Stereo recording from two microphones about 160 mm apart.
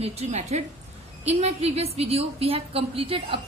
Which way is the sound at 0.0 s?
40° right (ahead or behind).